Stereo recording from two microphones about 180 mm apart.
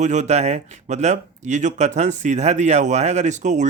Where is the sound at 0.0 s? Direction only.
40° right (ahead or behind).